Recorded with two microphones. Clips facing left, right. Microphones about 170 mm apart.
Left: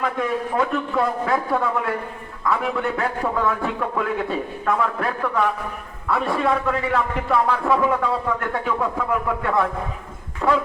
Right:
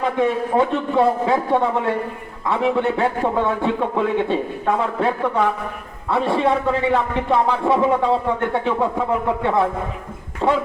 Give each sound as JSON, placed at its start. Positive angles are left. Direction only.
{"t": 0.0, "sound": "a man's voice", "side_deg": -25}